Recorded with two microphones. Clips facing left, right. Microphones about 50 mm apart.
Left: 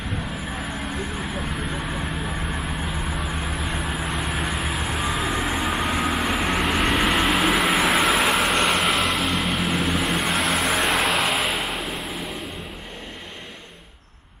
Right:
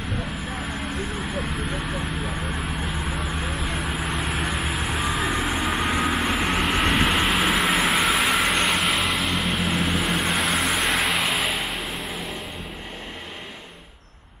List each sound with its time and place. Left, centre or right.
1.3 s vehicle: centre